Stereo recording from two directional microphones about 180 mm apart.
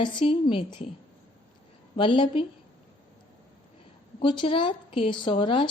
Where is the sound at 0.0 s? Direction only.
25° left (ahead or behind).